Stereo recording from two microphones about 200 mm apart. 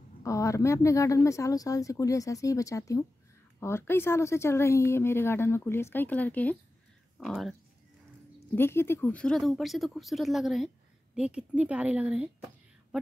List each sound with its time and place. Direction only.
0.2 s a woman's voice: 15° left (ahead or behind); by 7.5 s centre (ahead or behind)
8.5 s speech: 10° left (ahead or behind)